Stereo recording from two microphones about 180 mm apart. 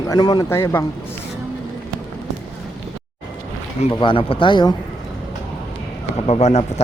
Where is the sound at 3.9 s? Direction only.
30° left (ahead or behind).